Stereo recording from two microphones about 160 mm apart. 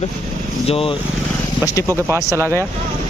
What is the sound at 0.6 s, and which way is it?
Speech, 35° left (ahead or behind).